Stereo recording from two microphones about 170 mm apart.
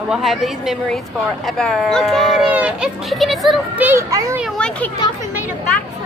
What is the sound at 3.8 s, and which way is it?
Speech, 20° right (ahead or behind).